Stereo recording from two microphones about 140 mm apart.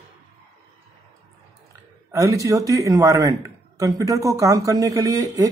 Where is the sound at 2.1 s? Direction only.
25° right (ahead or behind).